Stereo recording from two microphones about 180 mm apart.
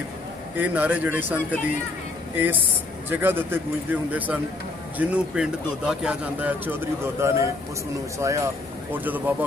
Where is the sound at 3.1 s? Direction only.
10° right (ahead or behind).